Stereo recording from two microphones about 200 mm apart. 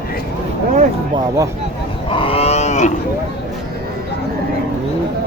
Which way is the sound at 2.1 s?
25° left (ahead or behind).